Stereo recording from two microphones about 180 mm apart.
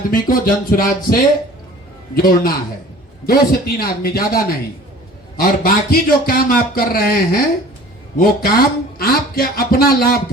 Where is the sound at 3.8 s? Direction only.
55° left (ahead or behind).